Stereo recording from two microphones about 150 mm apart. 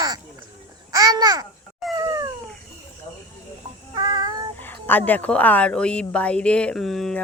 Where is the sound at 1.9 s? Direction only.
20° right (ahead or behind).